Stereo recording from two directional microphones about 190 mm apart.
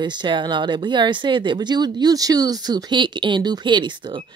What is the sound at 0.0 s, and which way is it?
Speech, 25° right (ahead or behind).